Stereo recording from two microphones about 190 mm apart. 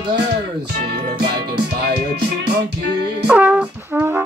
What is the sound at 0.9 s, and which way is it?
Music, 55° right (ahead or behind).